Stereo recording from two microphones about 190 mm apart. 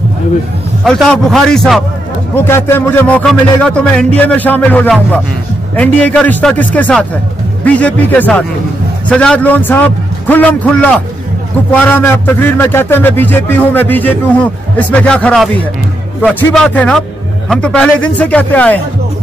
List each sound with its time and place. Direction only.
1.0 s a man's voice: 5° left (ahead or behind)
16.5 s a man's voice: 5° left (ahead or behind)